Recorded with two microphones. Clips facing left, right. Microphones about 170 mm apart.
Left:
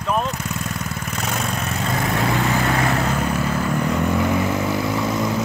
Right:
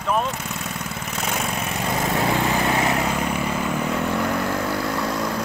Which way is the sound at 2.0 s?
15° right (ahead or behind).